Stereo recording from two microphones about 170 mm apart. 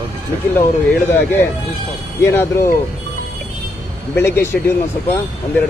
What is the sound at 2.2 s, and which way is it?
Speech, 15° left (ahead or behind).